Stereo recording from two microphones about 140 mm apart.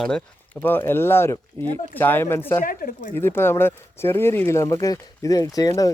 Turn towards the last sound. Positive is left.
turn(degrees=25)  # may be behind; listen again after turning